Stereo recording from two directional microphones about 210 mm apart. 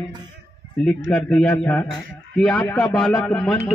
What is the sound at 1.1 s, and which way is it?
A man's voice, centre (ahead or behind).